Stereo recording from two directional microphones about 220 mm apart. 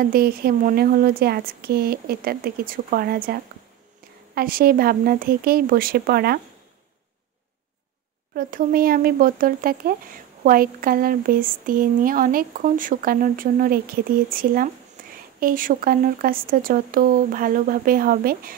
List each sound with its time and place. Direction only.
0.0 s speech: 45° right (ahead or behind)
4.4 s speech: 40° right (ahead or behind)
8.4 s speech: 40° right (ahead or behind)